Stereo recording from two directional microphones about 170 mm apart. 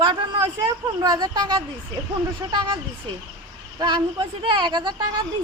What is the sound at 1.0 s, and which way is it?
Speech, 25° right (ahead or behind).